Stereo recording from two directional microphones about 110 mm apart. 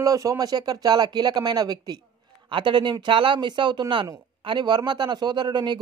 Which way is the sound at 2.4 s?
45° right (ahead or behind).